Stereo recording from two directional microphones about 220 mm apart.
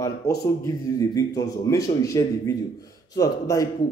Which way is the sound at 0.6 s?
15° left (ahead or behind).